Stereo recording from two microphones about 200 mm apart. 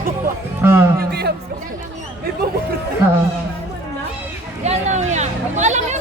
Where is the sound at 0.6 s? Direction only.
10° right (ahead or behind).